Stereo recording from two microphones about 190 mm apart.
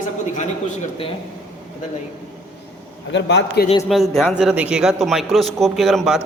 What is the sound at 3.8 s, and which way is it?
A man's voice, centre (ahead or behind).